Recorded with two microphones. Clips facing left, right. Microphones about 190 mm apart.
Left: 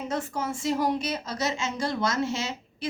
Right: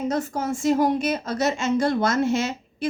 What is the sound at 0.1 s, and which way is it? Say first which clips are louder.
A woman's voice: right 5 dB; 40° right (ahead or behind).